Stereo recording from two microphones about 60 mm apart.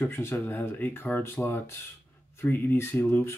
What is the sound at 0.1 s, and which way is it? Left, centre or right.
Speech, left.